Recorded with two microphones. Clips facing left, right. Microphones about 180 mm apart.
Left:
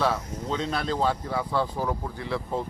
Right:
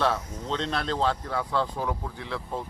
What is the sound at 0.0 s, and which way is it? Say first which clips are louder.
Speech: even; 5° left (ahead or behind).